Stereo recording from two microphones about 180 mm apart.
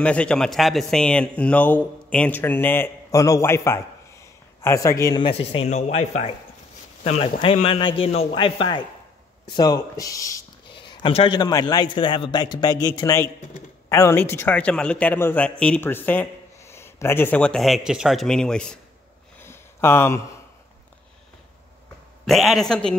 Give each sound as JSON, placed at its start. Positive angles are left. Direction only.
{"t": 0.0, "sound": "a man's voice", "side_deg": 5}
{"t": 5.2, "sound": "a man's voice", "side_deg": 30}
{"t": 19.4, "sound": "a sound", "side_deg": 15}
{"t": 22.2, "sound": "a man's voice", "side_deg": 0}